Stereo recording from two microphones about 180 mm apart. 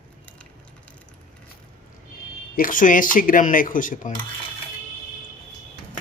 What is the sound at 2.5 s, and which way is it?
A man's voice, 50° left (ahead or behind).